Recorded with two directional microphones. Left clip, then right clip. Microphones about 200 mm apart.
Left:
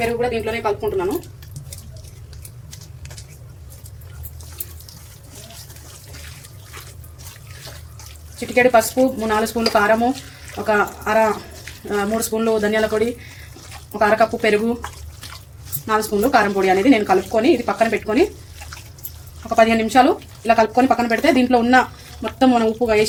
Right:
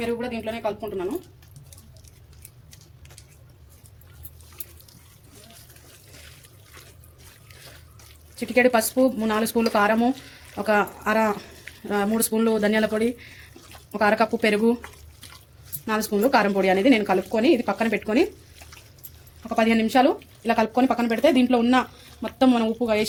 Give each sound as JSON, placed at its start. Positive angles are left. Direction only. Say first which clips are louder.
{"t": 0.2, "sound": "a woman's voice", "louder": "left 8 dB", "side_deg": -50}
{"t": 8.4, "sound": "a woman's voice", "louder": "left 5 dB", "side_deg": -55}
{"t": 15.9, "sound": "a woman's voice", "louder": "left 4 dB", "side_deg": -50}
{"t": 19.5, "sound": "a woman's voice", "louder": "left 6 dB", "side_deg": -45}